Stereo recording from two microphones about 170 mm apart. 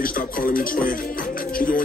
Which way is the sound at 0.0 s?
55° left (ahead or behind).